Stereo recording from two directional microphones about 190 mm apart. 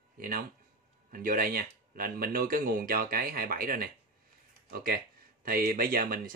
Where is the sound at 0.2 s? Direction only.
50° right (ahead or behind).